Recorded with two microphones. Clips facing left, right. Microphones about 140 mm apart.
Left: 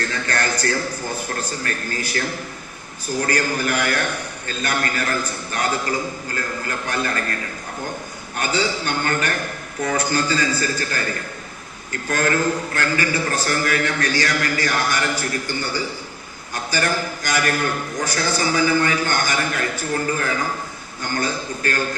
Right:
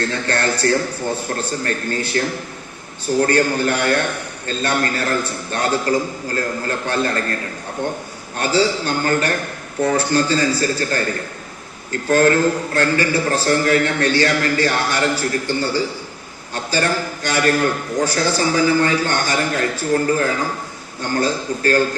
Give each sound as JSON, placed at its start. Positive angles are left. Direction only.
{"t": 0.0, "sound": "a man's voice", "side_deg": -30}
{"t": 8.4, "sound": "a man's voice", "side_deg": -35}